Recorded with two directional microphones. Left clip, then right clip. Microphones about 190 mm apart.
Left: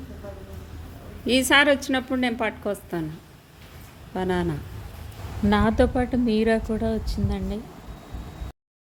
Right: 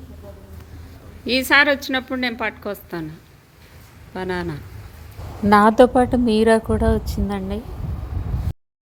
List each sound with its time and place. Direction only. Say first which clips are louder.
1.2 s a woman's voice: right 3 dB; centre (ahead or behind)
4.1 s a woman's voice: even; 5° left (ahead or behind)
5.5 s a woman's voice: right 9 dB; 20° right (ahead or behind)